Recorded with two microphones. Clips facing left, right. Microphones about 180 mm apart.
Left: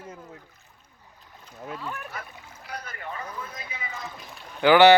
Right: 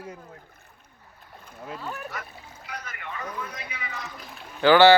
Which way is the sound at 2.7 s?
35° left (ahead or behind).